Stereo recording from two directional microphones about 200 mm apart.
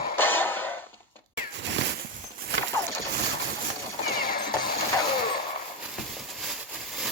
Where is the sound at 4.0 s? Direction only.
35° left (ahead or behind).